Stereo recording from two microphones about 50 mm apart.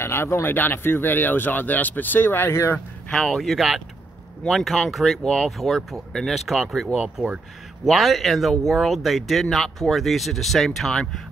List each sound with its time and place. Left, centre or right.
0.0 s speech: left
2.5 s speech: left
3.1 s speech: centre
3.4 s speech: centre
5.6 s speech: centre